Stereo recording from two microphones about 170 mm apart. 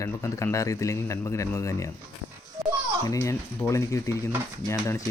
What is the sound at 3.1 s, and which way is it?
Speech, 20° left (ahead or behind).